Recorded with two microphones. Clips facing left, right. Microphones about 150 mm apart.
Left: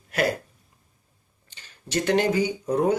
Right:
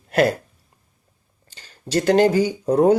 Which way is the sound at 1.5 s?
35° right (ahead or behind).